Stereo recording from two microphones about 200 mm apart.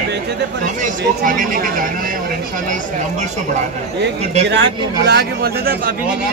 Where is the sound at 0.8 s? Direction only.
45° right (ahead or behind).